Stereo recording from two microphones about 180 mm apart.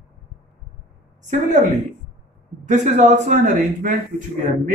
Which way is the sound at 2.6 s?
45° right (ahead or behind).